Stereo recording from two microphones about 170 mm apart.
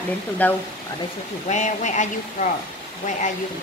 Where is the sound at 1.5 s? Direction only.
45° left (ahead or behind).